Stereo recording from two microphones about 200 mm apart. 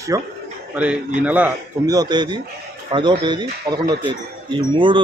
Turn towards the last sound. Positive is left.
turn(degrees=-25)  # may be behind; listen again after turning